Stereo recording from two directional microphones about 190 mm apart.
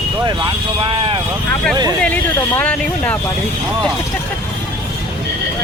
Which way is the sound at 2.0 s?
5° left (ahead or behind).